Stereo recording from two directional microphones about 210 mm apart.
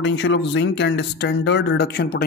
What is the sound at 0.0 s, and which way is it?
Speech, 60° left (ahead or behind).